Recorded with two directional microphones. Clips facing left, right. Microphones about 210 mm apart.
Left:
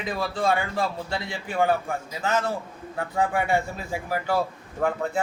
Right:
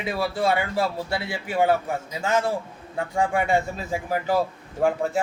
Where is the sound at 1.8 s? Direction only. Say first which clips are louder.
Right 1 dB; 25° right (ahead or behind).